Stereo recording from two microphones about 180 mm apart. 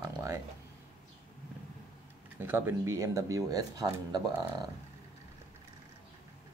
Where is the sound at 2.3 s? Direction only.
10° right (ahead or behind).